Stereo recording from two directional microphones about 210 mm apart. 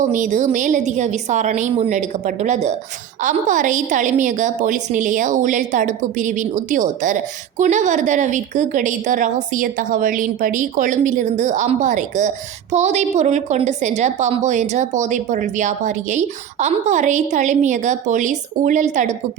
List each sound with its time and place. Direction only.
0.0 s a woman's voice: 35° right (ahead or behind)